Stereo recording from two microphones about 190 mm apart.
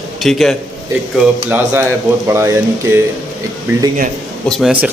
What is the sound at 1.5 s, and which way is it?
Speech, 10° right (ahead or behind).